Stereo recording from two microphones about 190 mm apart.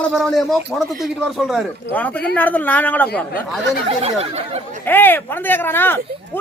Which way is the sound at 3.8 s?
30° right (ahead or behind).